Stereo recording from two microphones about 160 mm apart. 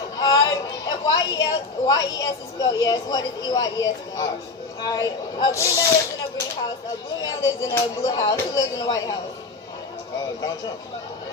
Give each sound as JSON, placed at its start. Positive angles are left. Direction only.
{"t": 0.2, "sound": "a woman's voice", "side_deg": 25}
{"t": 7.2, "sound": "speech", "side_deg": 20}